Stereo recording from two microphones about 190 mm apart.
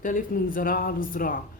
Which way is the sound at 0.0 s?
45° left (ahead or behind).